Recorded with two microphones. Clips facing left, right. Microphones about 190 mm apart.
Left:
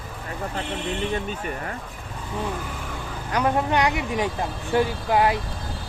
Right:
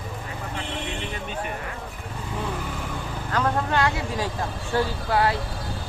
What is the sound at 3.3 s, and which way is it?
Speech, 15° left (ahead or behind).